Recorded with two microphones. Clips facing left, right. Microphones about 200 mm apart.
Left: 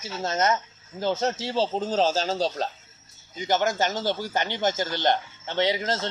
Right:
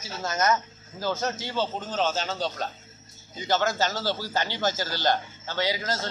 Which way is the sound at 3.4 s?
15° left (ahead or behind).